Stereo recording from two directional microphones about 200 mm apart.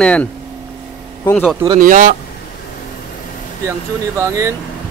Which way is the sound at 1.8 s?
40° right (ahead or behind).